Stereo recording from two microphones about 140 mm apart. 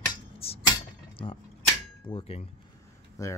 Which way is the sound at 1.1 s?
35° left (ahead or behind).